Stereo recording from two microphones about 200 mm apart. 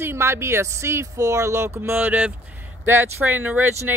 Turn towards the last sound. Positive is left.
turn(degrees=-10)  # may be behind; listen again after turning